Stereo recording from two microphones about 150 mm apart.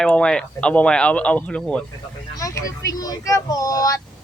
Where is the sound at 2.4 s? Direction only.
20° left (ahead or behind).